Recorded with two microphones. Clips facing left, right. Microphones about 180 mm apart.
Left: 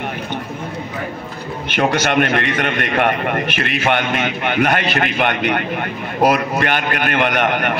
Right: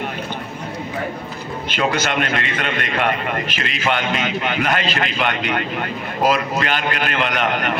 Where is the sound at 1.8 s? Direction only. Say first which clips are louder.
Left 4 dB; 55° left (ahead or behind).